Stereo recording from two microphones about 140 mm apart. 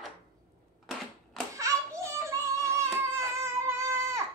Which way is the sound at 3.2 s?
20° right (ahead or behind).